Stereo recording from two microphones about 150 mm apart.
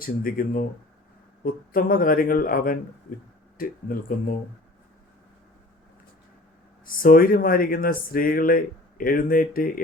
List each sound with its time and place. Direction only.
0.0 s speech: 75° left (ahead or behind)
6.8 s speech: 70° left (ahead or behind)